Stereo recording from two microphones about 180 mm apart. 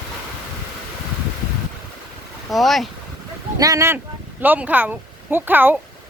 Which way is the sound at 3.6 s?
20° right (ahead or behind).